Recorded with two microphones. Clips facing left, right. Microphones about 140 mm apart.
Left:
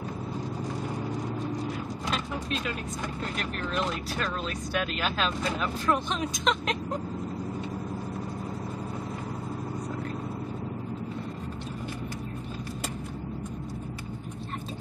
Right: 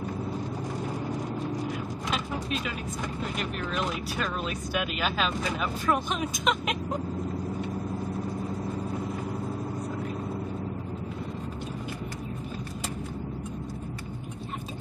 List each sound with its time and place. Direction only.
2.0 s vehicle: 5° right (ahead or behind)
3.2 s speech: 5° right (ahead or behind)